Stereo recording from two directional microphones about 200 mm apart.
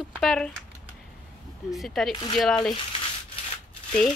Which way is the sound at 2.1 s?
20° left (ahead or behind).